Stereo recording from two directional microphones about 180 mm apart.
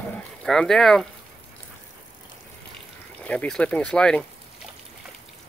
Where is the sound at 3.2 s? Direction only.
5° left (ahead or behind).